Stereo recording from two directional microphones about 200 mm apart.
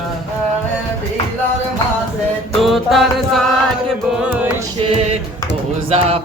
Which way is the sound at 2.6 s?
Centre (ahead or behind).